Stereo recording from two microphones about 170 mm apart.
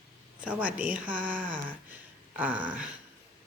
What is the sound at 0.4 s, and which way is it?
Speech, 10° right (ahead or behind).